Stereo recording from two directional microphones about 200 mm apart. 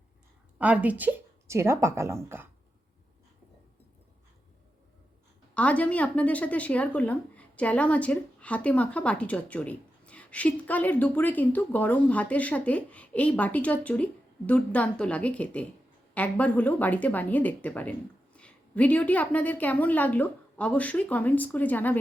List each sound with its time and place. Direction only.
0.6 s speech: 5° right (ahead or behind)
5.5 s a woman's voice: 5° left (ahead or behind)